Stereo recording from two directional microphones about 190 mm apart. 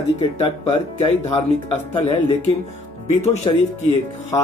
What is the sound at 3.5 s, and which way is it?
Speech, 25° left (ahead or behind).